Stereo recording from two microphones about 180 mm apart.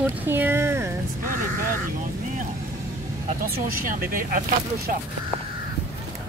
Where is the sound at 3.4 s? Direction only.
55° right (ahead or behind).